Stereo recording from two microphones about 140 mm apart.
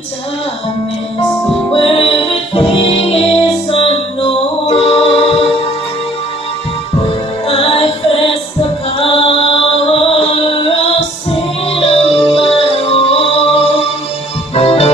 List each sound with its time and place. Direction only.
1.7 s music: 40° left (ahead or behind)
7.4 s music: 40° left (ahead or behind)